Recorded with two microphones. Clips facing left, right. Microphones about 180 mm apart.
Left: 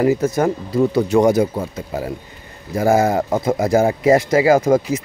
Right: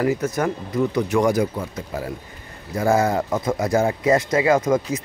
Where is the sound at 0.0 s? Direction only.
25° left (ahead or behind).